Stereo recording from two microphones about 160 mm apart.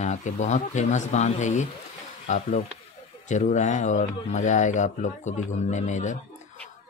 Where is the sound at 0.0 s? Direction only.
50° left (ahead or behind).